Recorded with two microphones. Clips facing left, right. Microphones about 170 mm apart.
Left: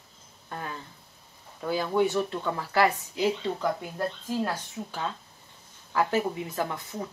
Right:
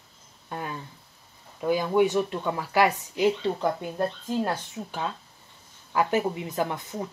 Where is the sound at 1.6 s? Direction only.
15° right (ahead or behind).